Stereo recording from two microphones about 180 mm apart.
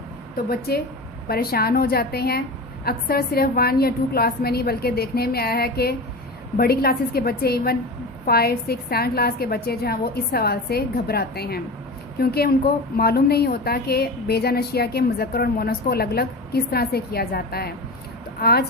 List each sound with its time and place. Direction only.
0.7 s a woman's voice: 60° left (ahead or behind)